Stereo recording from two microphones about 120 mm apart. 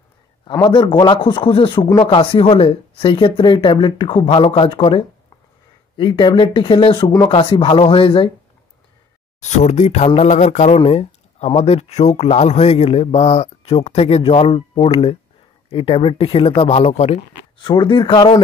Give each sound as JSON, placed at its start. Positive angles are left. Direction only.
{"t": 0.5, "sound": "speech", "side_deg": 35}
{"t": 9.4, "sound": "speech", "side_deg": 75}
{"t": 10.8, "sound": "speech", "side_deg": 70}
{"t": 17.6, "sound": "speech", "side_deg": 40}